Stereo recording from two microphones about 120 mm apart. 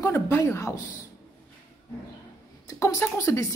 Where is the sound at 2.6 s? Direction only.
25° left (ahead or behind).